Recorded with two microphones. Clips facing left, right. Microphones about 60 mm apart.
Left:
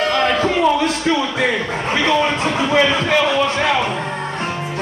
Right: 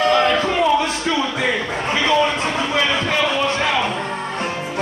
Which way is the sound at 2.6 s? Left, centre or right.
Centre.